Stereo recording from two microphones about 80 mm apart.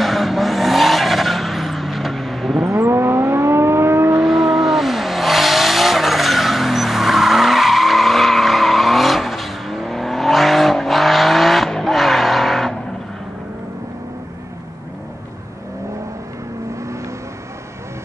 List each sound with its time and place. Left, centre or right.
0.0 s vehicle: centre
2.7 s vehicle: right
4.2 s vehicle: centre